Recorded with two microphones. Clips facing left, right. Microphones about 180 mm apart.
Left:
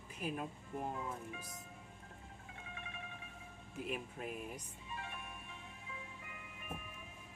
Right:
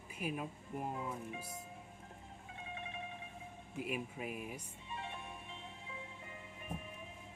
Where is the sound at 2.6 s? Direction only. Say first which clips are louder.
Right 5 dB; 25° right (ahead or behind).